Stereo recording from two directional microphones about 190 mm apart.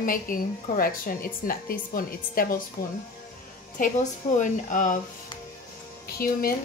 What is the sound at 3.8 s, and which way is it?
A woman's voice, 40° left (ahead or behind).